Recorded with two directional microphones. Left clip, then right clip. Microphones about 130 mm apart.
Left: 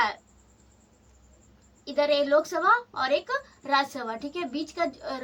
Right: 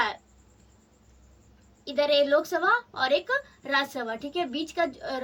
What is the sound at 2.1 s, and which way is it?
A woman's voice, 10° left (ahead or behind).